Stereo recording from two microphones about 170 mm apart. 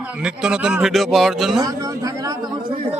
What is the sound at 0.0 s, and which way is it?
A man's voice, 5° right (ahead or behind).